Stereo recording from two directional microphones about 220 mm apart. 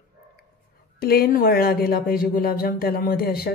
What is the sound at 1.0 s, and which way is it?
Speech, 45° left (ahead or behind).